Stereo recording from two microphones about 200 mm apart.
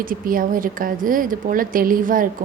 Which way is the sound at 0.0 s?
45° right (ahead or behind).